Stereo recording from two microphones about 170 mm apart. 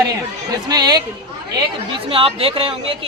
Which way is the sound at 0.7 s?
25° right (ahead or behind).